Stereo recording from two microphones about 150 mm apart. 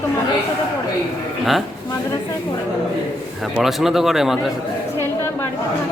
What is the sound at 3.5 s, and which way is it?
Speech, centre (ahead or behind).